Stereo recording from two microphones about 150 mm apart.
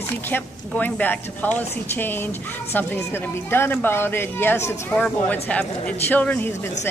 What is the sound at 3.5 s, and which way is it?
Speech, 15° left (ahead or behind).